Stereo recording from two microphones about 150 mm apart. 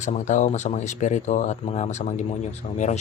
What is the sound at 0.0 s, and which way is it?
Speech, 50° left (ahead or behind).